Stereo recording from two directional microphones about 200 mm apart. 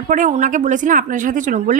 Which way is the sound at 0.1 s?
40° right (ahead or behind).